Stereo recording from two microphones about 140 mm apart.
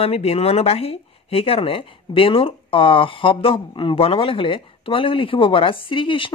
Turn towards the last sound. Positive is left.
turn(degrees=35)  # may be behind; listen again after turning